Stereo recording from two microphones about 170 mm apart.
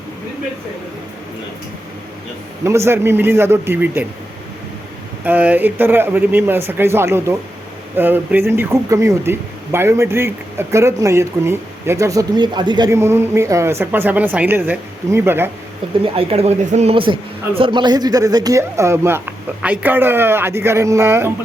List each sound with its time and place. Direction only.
2.6 s speech: 15° right (ahead or behind)
5.2 s speech: 10° right (ahead or behind)
16.1 s speech: 35° right (ahead or behind); by 21.2 s 15° right (ahead or behind)